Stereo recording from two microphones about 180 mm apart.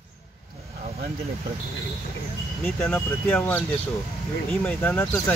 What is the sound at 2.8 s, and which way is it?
Speech, 5° left (ahead or behind).